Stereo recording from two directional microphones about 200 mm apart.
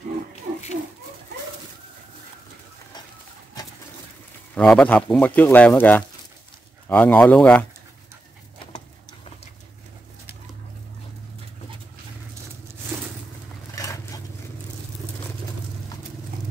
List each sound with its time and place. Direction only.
4.6 s speech: 5° left (ahead or behind)
13.7 s vehicle: 15° left (ahead or behind)